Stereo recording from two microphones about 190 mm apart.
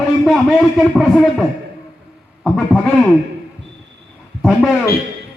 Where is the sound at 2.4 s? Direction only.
5° left (ahead or behind).